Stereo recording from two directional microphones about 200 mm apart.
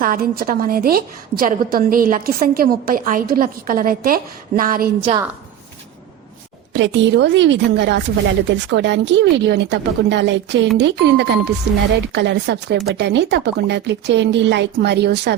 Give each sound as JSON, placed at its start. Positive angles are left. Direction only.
{"t": 0.0, "sound": "a woman's voice", "side_deg": -45}
{"t": 6.7, "sound": "speech", "side_deg": -65}